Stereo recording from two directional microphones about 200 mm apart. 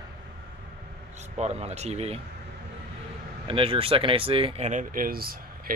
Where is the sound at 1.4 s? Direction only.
35° right (ahead or behind).